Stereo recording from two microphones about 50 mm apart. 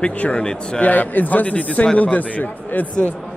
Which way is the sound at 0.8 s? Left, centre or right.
Left.